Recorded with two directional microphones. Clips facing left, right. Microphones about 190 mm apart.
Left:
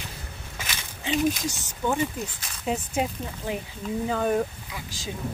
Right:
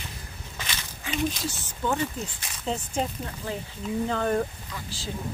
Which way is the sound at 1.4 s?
15° left (ahead or behind).